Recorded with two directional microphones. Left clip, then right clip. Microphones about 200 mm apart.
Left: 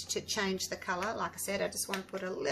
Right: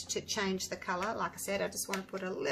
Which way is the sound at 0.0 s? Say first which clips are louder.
Left 1 dB; centre (ahead or behind).